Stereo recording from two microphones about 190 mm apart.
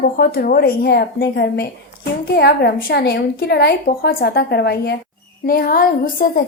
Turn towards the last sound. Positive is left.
turn(degrees=50)  # may be behind; listen again after turning